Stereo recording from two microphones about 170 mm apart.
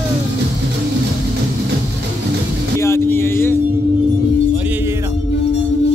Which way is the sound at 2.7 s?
15° left (ahead or behind).